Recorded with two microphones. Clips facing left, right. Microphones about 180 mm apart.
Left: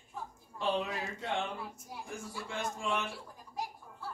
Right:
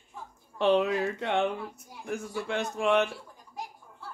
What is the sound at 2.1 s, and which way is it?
A man's voice, 70° right (ahead or behind).